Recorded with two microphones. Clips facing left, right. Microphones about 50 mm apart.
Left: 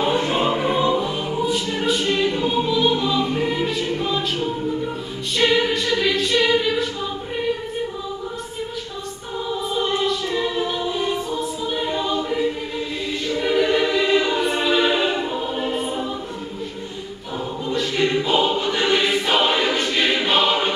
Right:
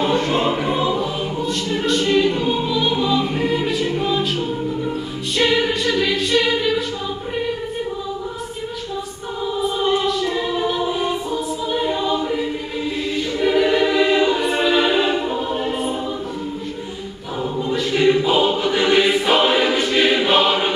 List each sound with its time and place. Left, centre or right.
0.0 s choir: centre
9.6 s choir: centre
13.4 s choir: centre
17.7 s choir: centre